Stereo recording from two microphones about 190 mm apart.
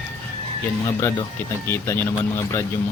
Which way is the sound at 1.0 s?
15° left (ahead or behind).